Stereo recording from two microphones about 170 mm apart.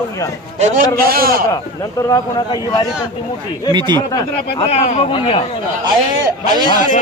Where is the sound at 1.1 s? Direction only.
60° right (ahead or behind).